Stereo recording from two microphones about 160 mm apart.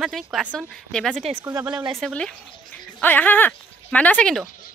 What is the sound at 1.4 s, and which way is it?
Speech, 20° right (ahead or behind).